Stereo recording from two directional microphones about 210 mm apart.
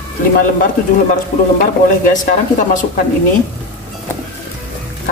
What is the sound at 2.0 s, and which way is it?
Speech, 40° left (ahead or behind).